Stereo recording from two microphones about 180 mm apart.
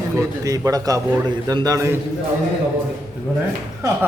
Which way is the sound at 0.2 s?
20° right (ahead or behind).